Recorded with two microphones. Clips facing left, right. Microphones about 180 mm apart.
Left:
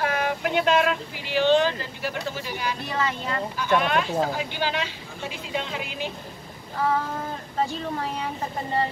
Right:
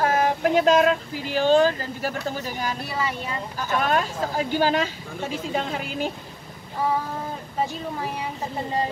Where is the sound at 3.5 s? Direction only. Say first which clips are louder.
Even; 40° right (ahead or behind).